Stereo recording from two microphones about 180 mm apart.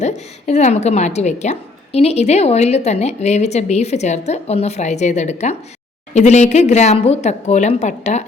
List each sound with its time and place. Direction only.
0.0 s a woman's voice: 40° left (ahead or behind)